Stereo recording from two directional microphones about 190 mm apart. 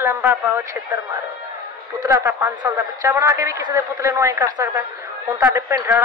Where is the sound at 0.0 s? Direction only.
10° right (ahead or behind).